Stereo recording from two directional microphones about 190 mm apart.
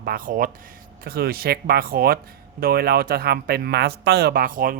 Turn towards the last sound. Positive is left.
turn(degrees=-45)  # may be behind; listen again after turning